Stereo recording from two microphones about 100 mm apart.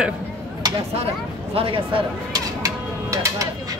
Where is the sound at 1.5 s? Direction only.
70° right (ahead or behind).